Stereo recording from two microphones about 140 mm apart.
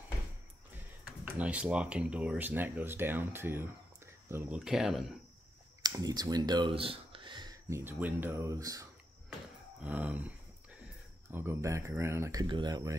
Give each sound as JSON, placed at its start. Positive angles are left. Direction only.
{"t": 1.2, "sound": "speech", "side_deg": -10}
{"t": 4.6, "sound": "speech", "side_deg": -5}
{"t": 5.8, "sound": "speech", "side_deg": -30}
{"t": 9.8, "sound": "a sound", "side_deg": -10}
{"t": 11.2, "sound": "speech", "side_deg": -15}